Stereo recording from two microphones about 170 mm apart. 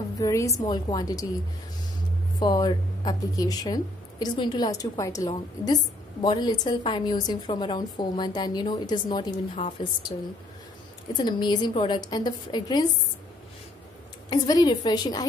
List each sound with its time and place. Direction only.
0.2 s speech: 20° left (ahead or behind)
2.4 s speech: 25° left (ahead or behind)
11.1 s speech: 25° left (ahead or behind)
14.3 s speech: 25° left (ahead or behind)